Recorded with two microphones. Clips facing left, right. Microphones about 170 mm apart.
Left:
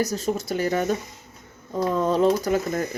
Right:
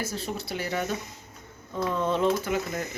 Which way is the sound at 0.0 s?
40° left (ahead or behind).